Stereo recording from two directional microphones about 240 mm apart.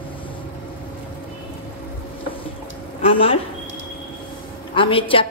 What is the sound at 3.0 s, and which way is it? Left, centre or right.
Speech, left.